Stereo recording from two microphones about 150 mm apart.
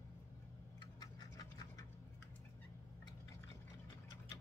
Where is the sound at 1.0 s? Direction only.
25° left (ahead or behind).